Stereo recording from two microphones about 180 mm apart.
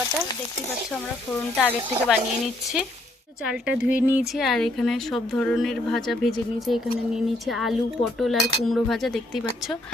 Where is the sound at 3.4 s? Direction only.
5° right (ahead or behind).